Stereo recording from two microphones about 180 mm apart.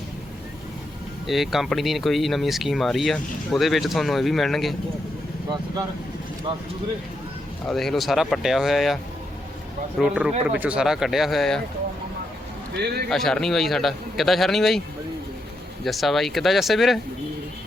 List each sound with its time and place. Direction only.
1.3 s speech: centre (ahead or behind)
7.7 s speech: centre (ahead or behind)
10.0 s speech: 5° right (ahead or behind)
12.7 s a man's voice: 65° right (ahead or behind)
13.1 s speech: centre (ahead or behind)
15.8 s speech: centre (ahead or behind)